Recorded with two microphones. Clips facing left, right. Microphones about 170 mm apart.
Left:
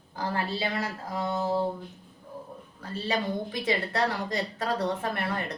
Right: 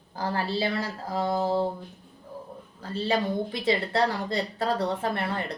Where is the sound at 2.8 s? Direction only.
30° right (ahead or behind).